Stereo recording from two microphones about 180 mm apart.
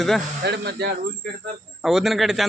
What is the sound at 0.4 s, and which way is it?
Speech, 65° right (ahead or behind).